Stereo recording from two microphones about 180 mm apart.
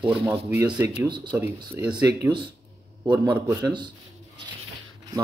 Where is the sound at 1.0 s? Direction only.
25° right (ahead or behind).